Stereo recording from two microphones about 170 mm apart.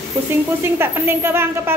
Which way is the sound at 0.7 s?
15° right (ahead or behind).